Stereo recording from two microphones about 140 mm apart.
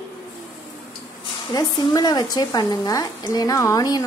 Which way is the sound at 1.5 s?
30° left (ahead or behind).